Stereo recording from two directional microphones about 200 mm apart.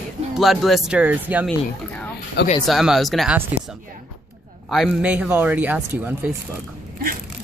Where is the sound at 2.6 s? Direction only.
Centre (ahead or behind).